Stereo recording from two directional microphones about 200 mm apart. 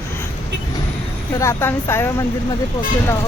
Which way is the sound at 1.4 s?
15° left (ahead or behind).